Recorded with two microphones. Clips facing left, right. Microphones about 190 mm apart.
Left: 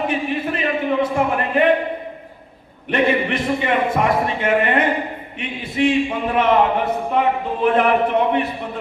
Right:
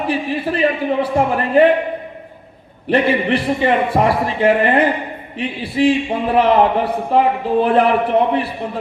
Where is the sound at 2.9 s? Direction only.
35° right (ahead or behind).